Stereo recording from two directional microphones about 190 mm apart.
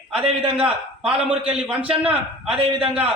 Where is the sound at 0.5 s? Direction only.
5° right (ahead or behind).